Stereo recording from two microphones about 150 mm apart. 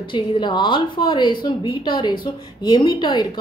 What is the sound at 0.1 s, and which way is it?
A woman's voice, 30° left (ahead or behind).